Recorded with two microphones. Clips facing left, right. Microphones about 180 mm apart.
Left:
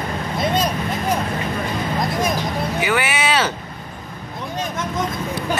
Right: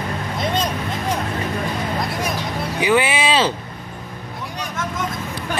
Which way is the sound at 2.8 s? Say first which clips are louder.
Right 5 dB; 25° right (ahead or behind).